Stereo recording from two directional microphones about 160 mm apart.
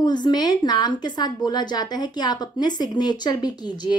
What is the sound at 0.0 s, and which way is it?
A woman's voice, 25° left (ahead or behind).